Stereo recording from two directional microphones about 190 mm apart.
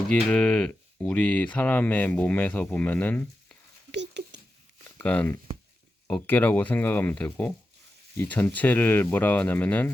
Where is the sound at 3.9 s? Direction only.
65° right (ahead or behind).